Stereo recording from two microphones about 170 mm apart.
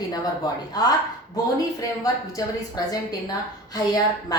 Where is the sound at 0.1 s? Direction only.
25° left (ahead or behind).